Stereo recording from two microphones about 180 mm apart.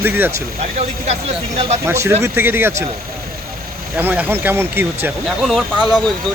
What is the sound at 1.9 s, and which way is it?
Speech, 15° right (ahead or behind).